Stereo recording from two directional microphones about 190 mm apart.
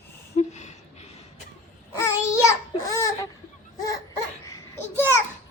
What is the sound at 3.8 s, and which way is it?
Baby cry, 20° left (ahead or behind).